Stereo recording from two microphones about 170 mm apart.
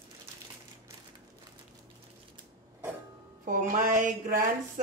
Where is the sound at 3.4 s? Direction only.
55° right (ahead or behind).